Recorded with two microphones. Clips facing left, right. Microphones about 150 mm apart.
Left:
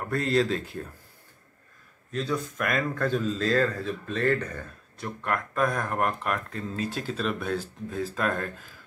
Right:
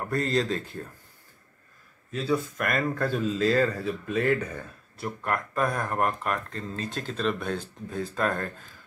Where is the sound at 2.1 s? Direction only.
5° right (ahead or behind).